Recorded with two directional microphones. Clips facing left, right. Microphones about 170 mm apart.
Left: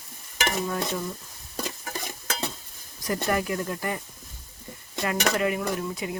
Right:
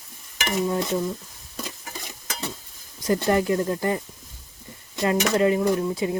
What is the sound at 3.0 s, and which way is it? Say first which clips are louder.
Speech: right 6 dB; 25° right (ahead or behind).